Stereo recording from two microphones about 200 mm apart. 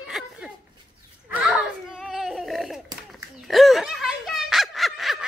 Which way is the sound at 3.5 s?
Centre (ahead or behind).